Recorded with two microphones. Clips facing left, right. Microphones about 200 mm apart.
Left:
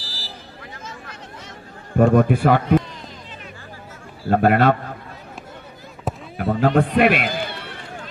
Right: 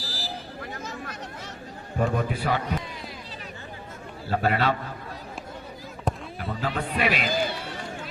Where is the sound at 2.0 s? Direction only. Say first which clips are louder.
Left 11 dB; 55° left (ahead or behind).